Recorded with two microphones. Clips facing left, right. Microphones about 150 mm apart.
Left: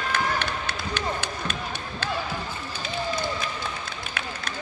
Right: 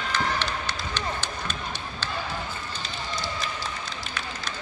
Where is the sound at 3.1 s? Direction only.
55° left (ahead or behind).